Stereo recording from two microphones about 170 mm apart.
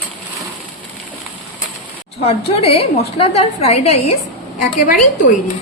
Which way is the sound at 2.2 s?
35° left (ahead or behind).